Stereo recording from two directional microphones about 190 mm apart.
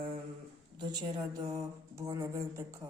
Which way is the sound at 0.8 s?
20° right (ahead or behind).